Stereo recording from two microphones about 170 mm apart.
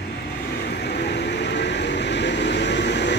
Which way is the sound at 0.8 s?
80° left.